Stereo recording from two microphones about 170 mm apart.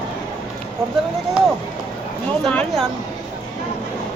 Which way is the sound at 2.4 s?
Centre (ahead or behind).